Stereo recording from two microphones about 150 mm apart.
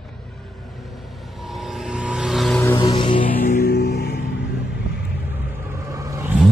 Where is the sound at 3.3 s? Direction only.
65° left (ahead or behind); by 4.2 s 90° left.